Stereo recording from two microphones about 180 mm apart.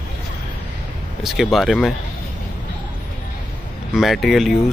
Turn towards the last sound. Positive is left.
turn(degrees=0)  # may be behind; listen again after turning